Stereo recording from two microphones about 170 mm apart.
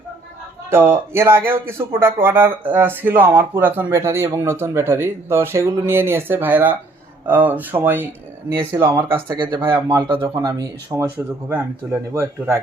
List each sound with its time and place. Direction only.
0.7 s speech: 15° right (ahead or behind)
9.2 s speech: 25° right (ahead or behind)